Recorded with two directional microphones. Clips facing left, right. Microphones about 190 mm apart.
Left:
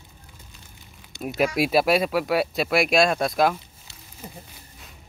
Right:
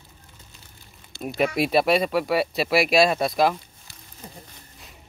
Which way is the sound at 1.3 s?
Centre (ahead or behind).